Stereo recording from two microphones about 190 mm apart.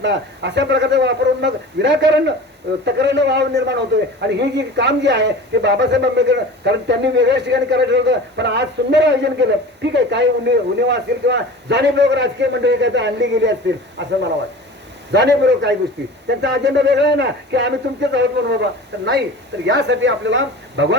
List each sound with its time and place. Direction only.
0.0 s a man's voice: 65° right (ahead or behind)